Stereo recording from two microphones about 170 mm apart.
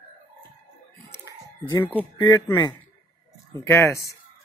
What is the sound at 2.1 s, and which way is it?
Speech, 25° left (ahead or behind).